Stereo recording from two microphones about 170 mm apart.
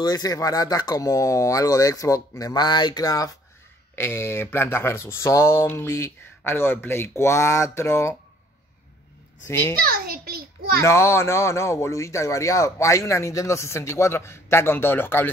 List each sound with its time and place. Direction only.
0.0 s speech: 25° left (ahead or behind)
9.5 s speech: 15° left (ahead or behind)
9.8 s a sound: 60° right (ahead or behind)
10.8 s speech: 15° left (ahead or behind)